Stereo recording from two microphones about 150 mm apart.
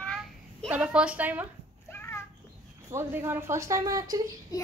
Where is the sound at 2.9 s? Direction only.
15° right (ahead or behind).